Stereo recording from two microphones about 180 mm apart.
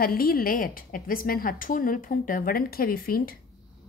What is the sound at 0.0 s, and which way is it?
A woman's voice, 55° left (ahead or behind).